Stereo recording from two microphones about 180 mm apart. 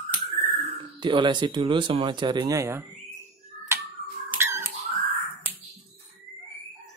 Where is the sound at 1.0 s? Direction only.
25° right (ahead or behind).